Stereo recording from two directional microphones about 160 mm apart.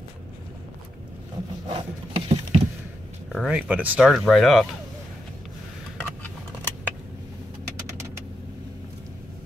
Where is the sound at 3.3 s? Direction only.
5° right (ahead or behind).